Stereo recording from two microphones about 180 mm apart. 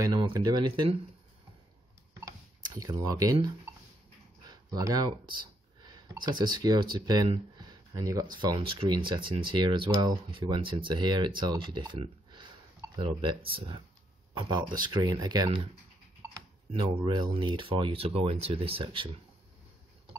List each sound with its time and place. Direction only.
0.0 s speech: 25° right (ahead or behind)
2.1 s cash register: 20° right (ahead or behind)
4.5 s speech: 20° right (ahead or behind)
16.7 s speech: 25° right (ahead or behind)